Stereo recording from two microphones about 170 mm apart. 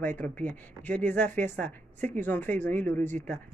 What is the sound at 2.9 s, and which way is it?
Speech, 45° right (ahead or behind).